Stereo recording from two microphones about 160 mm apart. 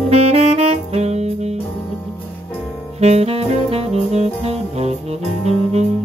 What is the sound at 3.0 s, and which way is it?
Saxophone, 40° right (ahead or behind).